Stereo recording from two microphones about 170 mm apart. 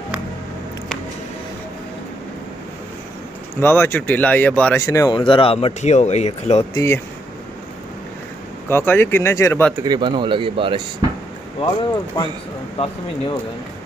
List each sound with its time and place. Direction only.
3.6 s speech: 15° left (ahead or behind)
4.8 s speech: 20° left (ahead or behind); by 6.6 s 40° left (ahead or behind)
6.7 s speech: 15° left (ahead or behind)
8.6 s speech: 15° left (ahead or behind)
9.8 s speech: 25° right (ahead or behind)
12.7 s speech: 30° left (ahead or behind)